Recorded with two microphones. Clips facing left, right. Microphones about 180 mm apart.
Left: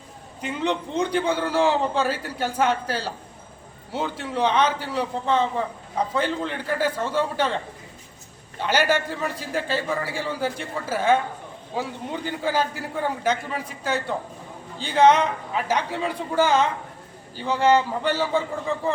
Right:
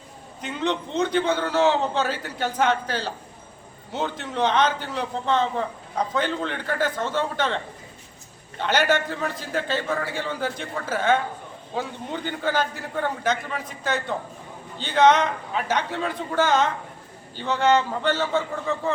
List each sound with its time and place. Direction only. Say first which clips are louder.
0.4 s a man's voice: left 1 dB; 10° left (ahead or behind)